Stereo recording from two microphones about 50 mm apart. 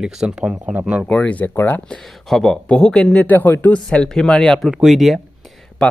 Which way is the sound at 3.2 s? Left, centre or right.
Left.